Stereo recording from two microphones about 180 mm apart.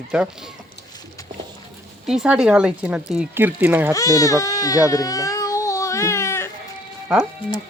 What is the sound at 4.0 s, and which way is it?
Baby cry, 20° left (ahead or behind).